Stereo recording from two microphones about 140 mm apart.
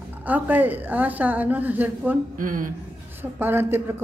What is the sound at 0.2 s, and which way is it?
A woman's voice, 10° right (ahead or behind).